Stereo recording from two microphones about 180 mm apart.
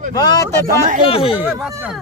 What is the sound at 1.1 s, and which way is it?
Speech, 30° left (ahead or behind).